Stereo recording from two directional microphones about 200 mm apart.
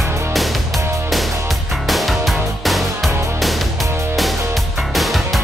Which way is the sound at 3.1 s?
15° right (ahead or behind).